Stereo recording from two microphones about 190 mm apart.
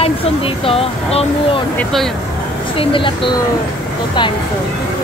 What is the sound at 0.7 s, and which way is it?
Speech, 30° left (ahead or behind).